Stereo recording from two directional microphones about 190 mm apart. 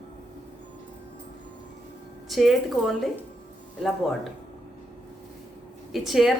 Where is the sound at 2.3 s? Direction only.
Centre (ahead or behind).